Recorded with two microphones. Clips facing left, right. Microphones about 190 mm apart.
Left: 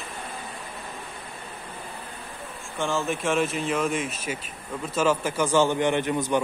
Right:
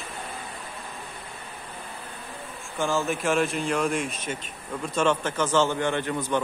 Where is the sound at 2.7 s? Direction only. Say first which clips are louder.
Right 1 dB; centre (ahead or behind); by 6.2 s 15° left (ahead or behind).